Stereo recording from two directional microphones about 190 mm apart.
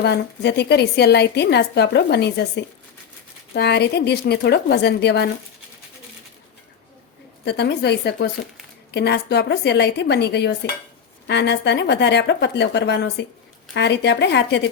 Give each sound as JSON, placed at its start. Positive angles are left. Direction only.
{"t": 0.0, "sound": "a woman's voice", "side_deg": 60}
{"t": 7.4, "sound": "a woman's voice", "side_deg": 60}